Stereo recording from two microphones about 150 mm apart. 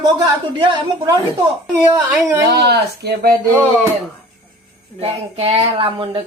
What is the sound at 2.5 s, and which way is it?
Speech, 90° right.